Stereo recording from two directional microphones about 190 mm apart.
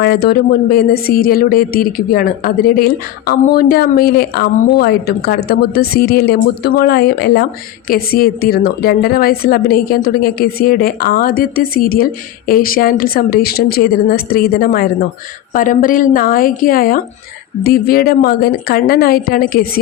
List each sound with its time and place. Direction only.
0.0 s speech: 55° left (ahead or behind)